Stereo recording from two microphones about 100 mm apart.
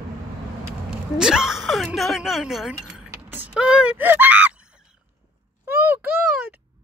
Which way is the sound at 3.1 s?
20° right (ahead or behind).